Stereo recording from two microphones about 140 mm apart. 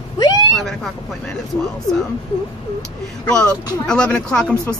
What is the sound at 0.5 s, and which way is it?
Speech, centre (ahead or behind).